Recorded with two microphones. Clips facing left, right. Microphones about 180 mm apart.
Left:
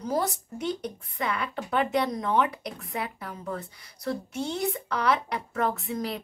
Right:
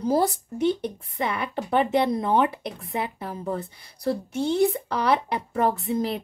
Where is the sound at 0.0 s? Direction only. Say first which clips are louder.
Right 6 dB; 30° right (ahead or behind).